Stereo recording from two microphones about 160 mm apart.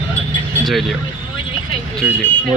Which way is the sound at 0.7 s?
Centre (ahead or behind).